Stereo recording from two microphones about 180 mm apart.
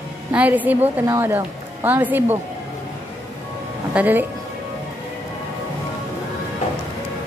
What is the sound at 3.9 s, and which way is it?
Speech, 10° right (ahead or behind).